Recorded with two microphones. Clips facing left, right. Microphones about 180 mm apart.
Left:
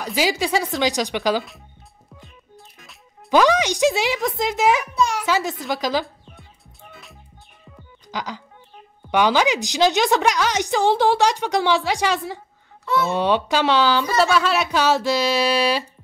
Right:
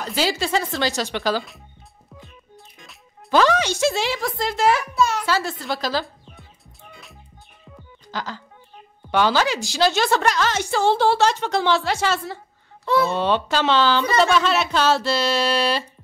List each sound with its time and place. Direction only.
0.0 s a woman's voice: 10° left (ahead or behind)
2.1 s music: centre (ahead or behind)
3.3 s a woman's voice: 15° left (ahead or behind)
6.0 s music: centre (ahead or behind)
8.1 s a woman's voice: 15° left (ahead or behind)